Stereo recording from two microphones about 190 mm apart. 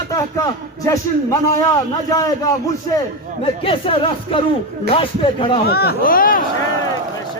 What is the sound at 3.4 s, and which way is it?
A man's voice, 30° left (ahead or behind).